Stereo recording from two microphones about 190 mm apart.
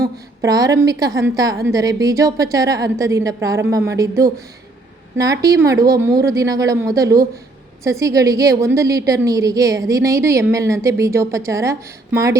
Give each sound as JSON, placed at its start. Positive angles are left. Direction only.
{"t": 0.4, "sound": "a woman's voice", "side_deg": -20}